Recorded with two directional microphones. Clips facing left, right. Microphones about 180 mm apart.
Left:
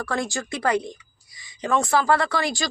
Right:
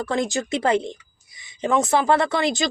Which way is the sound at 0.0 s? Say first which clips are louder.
Right 4 dB; 20° right (ahead or behind).